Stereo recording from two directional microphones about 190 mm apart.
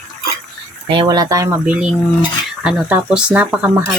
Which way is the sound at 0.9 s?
25° right (ahead or behind).